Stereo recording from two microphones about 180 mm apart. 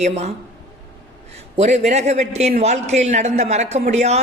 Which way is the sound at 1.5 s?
35° right (ahead or behind).